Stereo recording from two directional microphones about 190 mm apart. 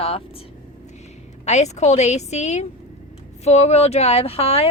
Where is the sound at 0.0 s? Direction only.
30° left (ahead or behind).